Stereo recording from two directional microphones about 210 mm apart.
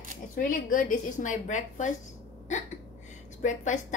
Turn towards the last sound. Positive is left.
turn(degrees=35)  # may be behind; listen again after turning